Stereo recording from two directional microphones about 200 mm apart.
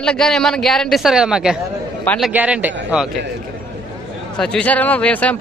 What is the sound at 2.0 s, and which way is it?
Speech, 10° left (ahead or behind).